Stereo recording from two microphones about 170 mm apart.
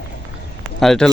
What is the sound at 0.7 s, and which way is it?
Speech, centre (ahead or behind).